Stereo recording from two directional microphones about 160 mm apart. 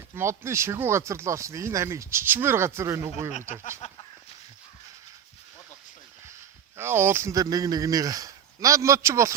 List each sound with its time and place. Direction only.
0.2 s speech: 15° right (ahead or behind)
3.3 s speech: 50° left (ahead or behind)
6.7 s speech: 15° right (ahead or behind)